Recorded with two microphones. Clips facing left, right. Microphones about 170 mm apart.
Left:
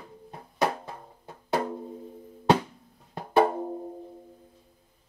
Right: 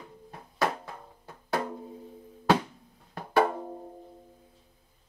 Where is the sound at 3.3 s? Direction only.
35° left (ahead or behind).